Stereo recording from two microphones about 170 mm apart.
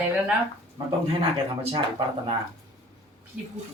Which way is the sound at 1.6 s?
30° right (ahead or behind).